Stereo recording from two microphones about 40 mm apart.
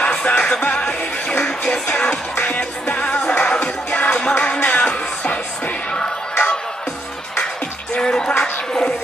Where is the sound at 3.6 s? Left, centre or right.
Left.